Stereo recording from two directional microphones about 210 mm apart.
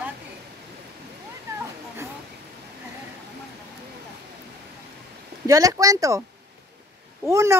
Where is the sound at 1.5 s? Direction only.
15° right (ahead or behind).